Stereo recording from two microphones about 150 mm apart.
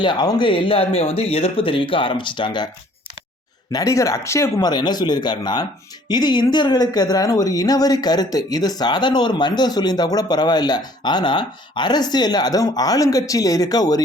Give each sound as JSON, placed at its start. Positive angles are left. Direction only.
{"t": 0.0, "sound": "speech", "side_deg": 30}
{"t": 3.7, "sound": "speech", "side_deg": 25}